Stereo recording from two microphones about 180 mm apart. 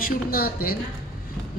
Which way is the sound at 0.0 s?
55° left (ahead or behind).